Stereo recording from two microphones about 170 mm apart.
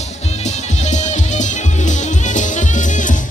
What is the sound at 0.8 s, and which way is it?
Music, 45° left (ahead or behind).